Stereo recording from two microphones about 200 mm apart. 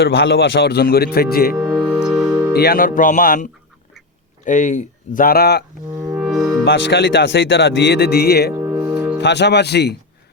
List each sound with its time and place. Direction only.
0.0 s speech: 65° left (ahead or behind); by 1.5 s 50° left (ahead or behind)
2.0 s music: centre (ahead or behind)
2.5 s speech: 50° left (ahead or behind)
6.1 s music: centre (ahead or behind)
6.7 s speech: 60° left (ahead or behind)
8.5 s music: 15° right (ahead or behind)
9.1 s speech: 60° left (ahead or behind)